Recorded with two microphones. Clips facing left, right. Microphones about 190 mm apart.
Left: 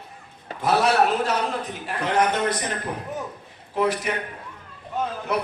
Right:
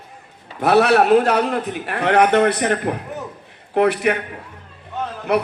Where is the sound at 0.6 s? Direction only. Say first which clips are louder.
Right 6 dB; 65° right (ahead or behind).